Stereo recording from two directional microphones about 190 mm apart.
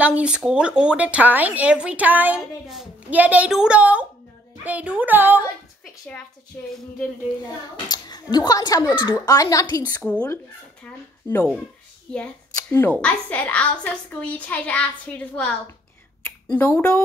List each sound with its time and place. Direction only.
0.0 s a woman's voice: 5° right (ahead or behind)
7.4 s a woman's voice: 20° left (ahead or behind)
12.5 s a child's voice: 10° left (ahead or behind)